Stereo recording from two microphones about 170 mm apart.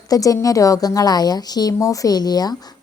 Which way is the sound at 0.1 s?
20° left (ahead or behind).